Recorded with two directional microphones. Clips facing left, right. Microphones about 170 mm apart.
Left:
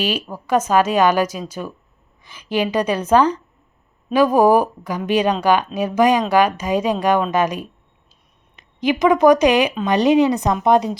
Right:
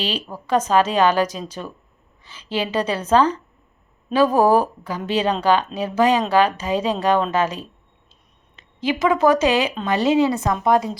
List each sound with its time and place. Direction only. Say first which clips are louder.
0.0 s a woman's voice: left 4 dB; 10° left (ahead or behind)